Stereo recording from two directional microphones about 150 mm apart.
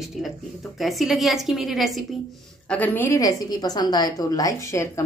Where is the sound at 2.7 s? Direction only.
10° left (ahead or behind).